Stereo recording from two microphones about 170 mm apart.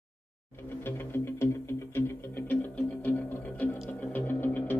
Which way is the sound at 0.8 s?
15° left (ahead or behind).